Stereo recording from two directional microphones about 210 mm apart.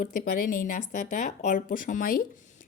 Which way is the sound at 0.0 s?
40° left (ahead or behind).